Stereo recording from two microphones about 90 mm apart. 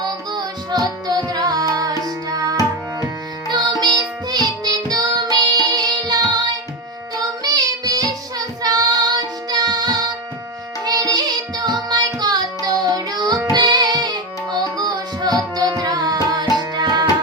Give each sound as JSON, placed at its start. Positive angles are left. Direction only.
{"t": 0.0, "sound": "music", "side_deg": -50}
{"t": 7.2, "sound": "child singing", "side_deg": -45}
{"t": 13.5, "sound": "music", "side_deg": -50}
{"t": 14.8, "sound": "carnatic music", "side_deg": -50}